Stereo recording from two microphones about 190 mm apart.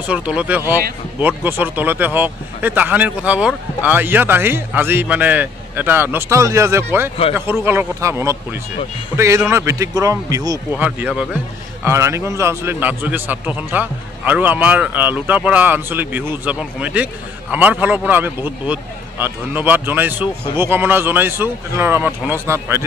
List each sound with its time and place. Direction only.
0.0 s speech: 5° right (ahead or behind)
10.7 s speech: 5° right (ahead or behind)